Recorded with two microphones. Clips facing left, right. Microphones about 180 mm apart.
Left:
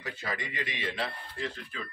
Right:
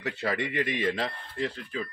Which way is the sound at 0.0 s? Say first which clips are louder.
Right 7 dB; 65° right (ahead or behind).